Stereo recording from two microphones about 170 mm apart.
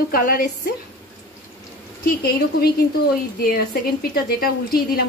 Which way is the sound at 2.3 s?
65° left (ahead or behind).